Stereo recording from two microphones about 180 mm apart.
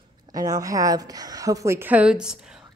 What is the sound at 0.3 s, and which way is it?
A woman's voice, 20° right (ahead or behind).